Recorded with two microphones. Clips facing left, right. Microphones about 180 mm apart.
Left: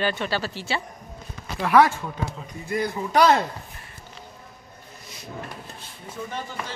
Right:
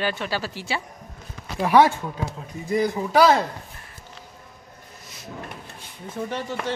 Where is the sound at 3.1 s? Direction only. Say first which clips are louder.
Right 1 dB; 5° right (ahead or behind).